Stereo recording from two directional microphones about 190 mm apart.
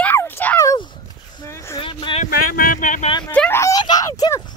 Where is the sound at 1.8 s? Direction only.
25° left (ahead or behind).